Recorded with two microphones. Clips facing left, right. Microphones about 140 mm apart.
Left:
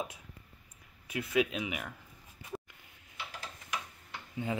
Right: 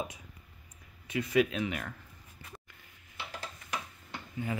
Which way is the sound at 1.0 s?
5° left (ahead or behind).